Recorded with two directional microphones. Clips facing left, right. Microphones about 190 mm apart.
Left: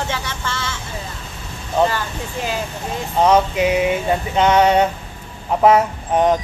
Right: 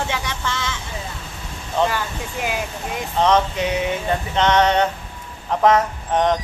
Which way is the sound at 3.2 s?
10° left (ahead or behind).